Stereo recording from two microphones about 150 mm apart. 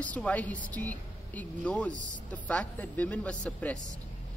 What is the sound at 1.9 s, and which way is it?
Speech, 55° right (ahead or behind).